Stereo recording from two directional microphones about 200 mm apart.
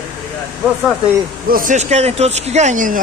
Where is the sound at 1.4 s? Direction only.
45° right (ahead or behind).